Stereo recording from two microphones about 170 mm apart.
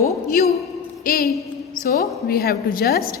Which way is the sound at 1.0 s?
60° left (ahead or behind).